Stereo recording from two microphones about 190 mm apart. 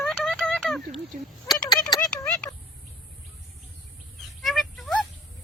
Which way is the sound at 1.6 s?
20° left (ahead or behind).